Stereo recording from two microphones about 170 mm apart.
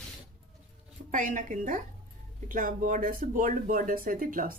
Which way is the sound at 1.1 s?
50° right (ahead or behind).